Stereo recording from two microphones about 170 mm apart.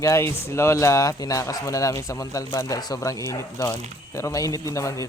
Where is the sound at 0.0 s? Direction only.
15° left (ahead or behind).